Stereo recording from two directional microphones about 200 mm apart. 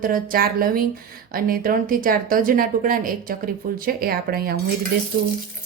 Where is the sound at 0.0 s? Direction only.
45° right (ahead or behind).